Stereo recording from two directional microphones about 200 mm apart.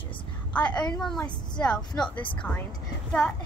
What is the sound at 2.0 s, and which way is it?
Speech, 25° left (ahead or behind).